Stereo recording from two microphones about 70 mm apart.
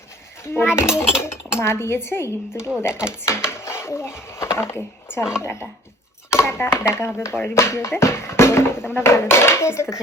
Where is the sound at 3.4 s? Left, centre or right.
Left.